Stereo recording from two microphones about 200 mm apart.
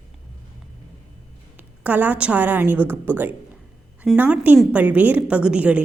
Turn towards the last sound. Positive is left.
turn(degrees=-5)  # may be behind; listen again after turning